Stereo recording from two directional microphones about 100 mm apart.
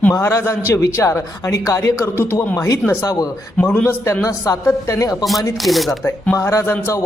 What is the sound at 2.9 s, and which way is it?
Speech, 30° left (ahead or behind).